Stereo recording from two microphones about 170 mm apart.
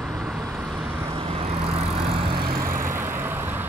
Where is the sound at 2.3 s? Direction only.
60° right (ahead or behind).